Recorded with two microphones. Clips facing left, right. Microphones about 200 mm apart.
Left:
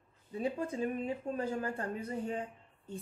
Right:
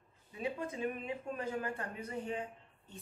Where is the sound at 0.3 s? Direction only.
35° left (ahead or behind).